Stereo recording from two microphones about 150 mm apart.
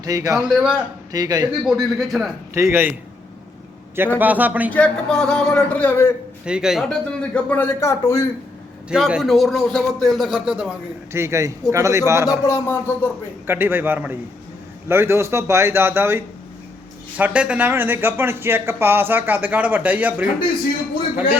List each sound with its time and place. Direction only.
0.0 s a man's voice: 25° right (ahead or behind)
0.4 s a man's voice: 5° right (ahead or behind)
1.1 s a man's voice: 25° right (ahead or behind)
1.6 s a man's voice: centre (ahead or behind)
2.6 s speech: 15° right (ahead or behind)
3.9 s speech: 15° right (ahead or behind)
4.7 s a man's voice: 5° left (ahead or behind)
6.4 s a man's voice: 5° right (ahead or behind); by 8.2 s 20° left (ahead or behind)
8.9 s a man's voice: 5° right (ahead or behind)
11.1 s a man's voice: 20° right (ahead or behind)
12.5 s a man's voice: 20° left (ahead or behind)
13.5 s speech: 15° right (ahead or behind)